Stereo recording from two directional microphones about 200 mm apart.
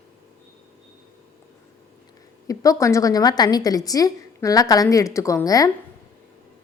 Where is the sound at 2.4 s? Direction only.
15° left (ahead or behind).